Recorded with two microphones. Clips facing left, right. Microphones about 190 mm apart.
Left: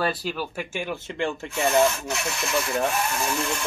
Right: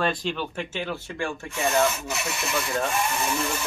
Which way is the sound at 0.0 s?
5° left (ahead or behind).